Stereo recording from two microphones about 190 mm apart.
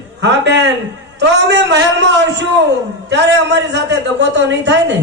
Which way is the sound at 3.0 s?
70° right (ahead or behind).